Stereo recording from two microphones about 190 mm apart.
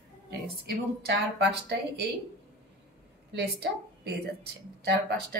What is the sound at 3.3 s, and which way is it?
A woman's voice, 60° right (ahead or behind).